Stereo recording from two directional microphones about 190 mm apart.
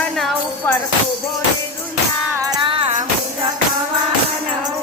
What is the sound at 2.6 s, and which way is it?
Music, 30° right (ahead or behind).